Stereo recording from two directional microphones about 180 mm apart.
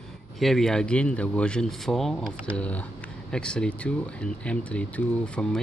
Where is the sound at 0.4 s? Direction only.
Centre (ahead or behind).